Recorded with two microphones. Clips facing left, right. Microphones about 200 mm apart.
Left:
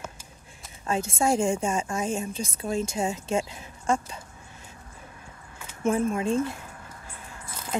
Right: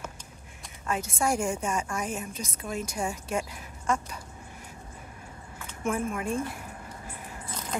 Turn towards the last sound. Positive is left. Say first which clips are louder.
# left 4 dB
turn(degrees=25)  # may be behind; listen again after turning